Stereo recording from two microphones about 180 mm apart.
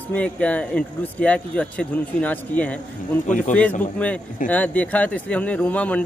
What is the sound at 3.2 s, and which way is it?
Speech, 45° left (ahead or behind).